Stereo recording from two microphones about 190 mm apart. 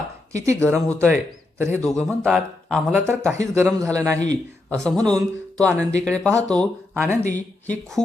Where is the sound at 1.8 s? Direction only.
Centre (ahead or behind).